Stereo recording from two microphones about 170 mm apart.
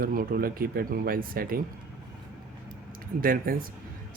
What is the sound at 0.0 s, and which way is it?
Speech, 55° right (ahead or behind).